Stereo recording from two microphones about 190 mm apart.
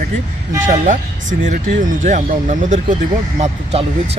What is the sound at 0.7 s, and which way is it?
Speech, 40° right (ahead or behind).